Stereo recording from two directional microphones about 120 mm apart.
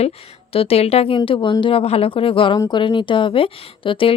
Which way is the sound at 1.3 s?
40° left (ahead or behind).